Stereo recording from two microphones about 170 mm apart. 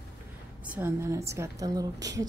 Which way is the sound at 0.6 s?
10° right (ahead or behind).